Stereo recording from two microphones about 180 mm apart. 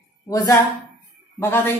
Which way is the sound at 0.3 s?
20° left (ahead or behind).